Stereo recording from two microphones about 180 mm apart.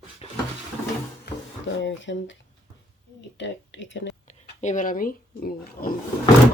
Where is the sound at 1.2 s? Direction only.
80° left.